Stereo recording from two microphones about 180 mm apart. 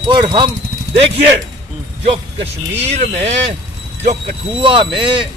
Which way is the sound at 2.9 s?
35° right (ahead or behind).